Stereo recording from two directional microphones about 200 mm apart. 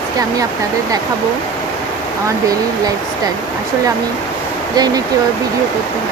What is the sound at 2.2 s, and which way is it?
Speech, 15° right (ahead or behind).